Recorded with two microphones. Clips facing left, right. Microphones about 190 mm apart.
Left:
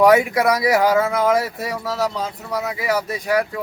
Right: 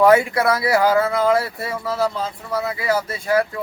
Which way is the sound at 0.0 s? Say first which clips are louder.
Even; 15° left (ahead or behind).